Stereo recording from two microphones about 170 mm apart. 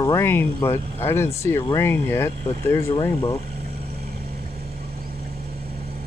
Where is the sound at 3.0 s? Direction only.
30° left (ahead or behind).